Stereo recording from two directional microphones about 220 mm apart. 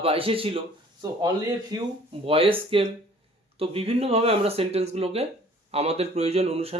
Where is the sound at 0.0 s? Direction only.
25° right (ahead or behind).